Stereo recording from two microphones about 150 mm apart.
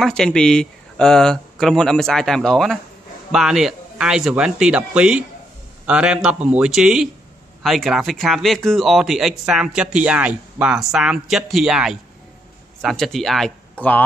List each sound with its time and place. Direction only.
0.0 s speech: 5° left (ahead or behind)